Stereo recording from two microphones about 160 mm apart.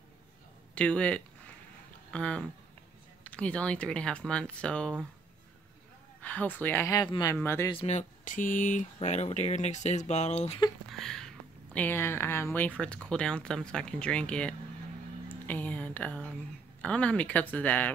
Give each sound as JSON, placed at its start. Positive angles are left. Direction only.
{"t": 0.7, "sound": "speech", "side_deg": 5}
{"t": 6.2, "sound": "speech", "side_deg": 10}
{"t": 6.9, "sound": "speech", "side_deg": 25}
{"t": 7.3, "sound": "speech", "side_deg": 15}
{"t": 7.7, "sound": "speech", "side_deg": 45}
{"t": 10.9, "sound": "speech", "side_deg": 5}
{"t": 15.2, "sound": "a sound", "side_deg": 10}
{"t": 16.8, "sound": "speech", "side_deg": 5}